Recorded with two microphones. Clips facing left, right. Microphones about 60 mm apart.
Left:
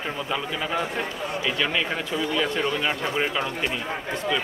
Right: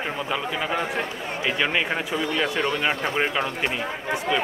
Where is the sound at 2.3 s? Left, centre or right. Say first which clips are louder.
Even; centre.